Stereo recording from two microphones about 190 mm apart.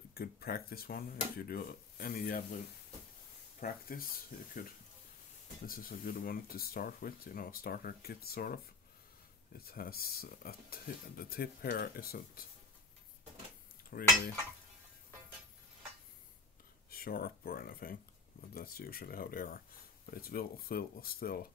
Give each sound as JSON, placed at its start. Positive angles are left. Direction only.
{"t": 0.1, "sound": "speech", "side_deg": 55}
{"t": 13.8, "sound": "cutlery", "side_deg": 50}
{"t": 16.9, "sound": "speech", "side_deg": 50}